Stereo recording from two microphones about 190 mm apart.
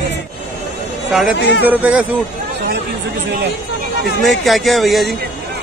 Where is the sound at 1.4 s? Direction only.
65° left (ahead or behind).